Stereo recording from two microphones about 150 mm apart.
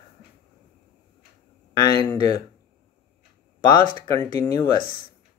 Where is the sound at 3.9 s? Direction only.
25° left (ahead or behind).